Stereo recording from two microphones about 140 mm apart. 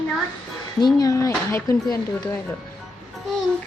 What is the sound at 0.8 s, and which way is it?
Speech, 25° left (ahead or behind).